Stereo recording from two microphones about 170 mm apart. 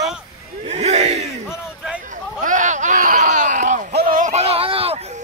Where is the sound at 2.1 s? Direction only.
50° right (ahead or behind).